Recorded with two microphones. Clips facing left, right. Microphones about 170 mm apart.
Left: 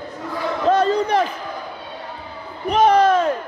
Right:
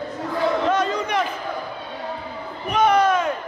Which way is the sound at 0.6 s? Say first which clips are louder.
Left 5 dB; 35° left (ahead or behind).